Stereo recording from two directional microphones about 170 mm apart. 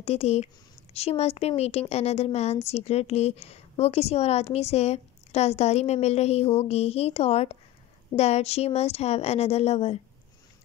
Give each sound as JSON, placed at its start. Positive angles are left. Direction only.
{"t": 0.0, "sound": "a woman's voice", "side_deg": 40}